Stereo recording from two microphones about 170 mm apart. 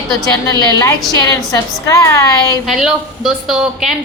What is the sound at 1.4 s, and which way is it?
Speech, 20° left (ahead or behind).